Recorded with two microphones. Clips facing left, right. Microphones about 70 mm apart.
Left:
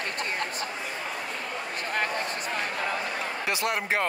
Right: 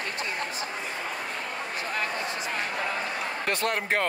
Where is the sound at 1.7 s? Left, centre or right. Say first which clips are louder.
Left 2 dB; left.